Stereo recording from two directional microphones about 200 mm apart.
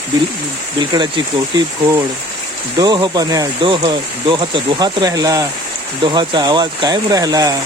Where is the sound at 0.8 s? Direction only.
25° right (ahead or behind).